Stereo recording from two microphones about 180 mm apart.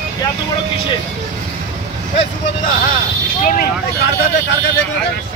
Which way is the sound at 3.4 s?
45° left (ahead or behind).